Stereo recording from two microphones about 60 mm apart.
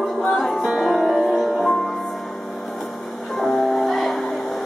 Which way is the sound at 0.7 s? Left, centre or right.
Centre.